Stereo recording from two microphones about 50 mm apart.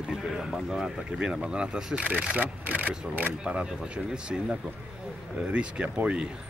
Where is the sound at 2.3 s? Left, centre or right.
Right.